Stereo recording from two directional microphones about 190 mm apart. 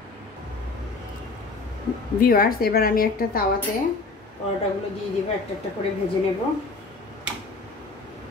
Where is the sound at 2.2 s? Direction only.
50° left (ahead or behind).